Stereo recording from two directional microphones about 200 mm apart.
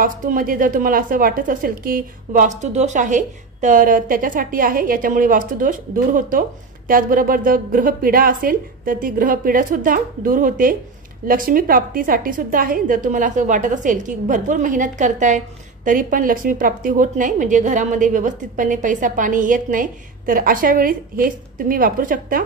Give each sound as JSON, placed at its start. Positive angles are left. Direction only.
{"t": 0.0, "sound": "a woman's voice", "side_deg": -45}